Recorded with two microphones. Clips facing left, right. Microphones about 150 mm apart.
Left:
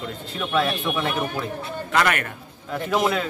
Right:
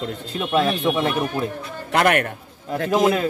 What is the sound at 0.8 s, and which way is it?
Speech, 20° right (ahead or behind).